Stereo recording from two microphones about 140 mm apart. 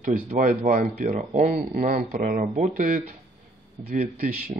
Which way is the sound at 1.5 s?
90° right.